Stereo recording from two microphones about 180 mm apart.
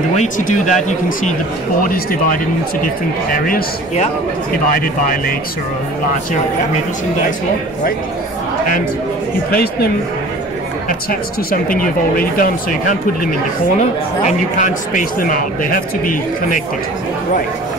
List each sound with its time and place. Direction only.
0.1 s a man's voice: 40° left (ahead or behind)
9.5 s speech: 60° left (ahead or behind)
11.8 s a man's voice: 50° left (ahead or behind)